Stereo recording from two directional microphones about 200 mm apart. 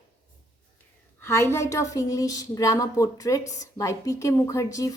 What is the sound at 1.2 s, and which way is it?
A woman's voice, 10° left (ahead or behind).